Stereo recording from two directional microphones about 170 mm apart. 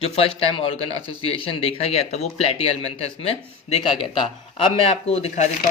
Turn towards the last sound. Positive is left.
turn(degrees=40)  # may be behind; listen again after turning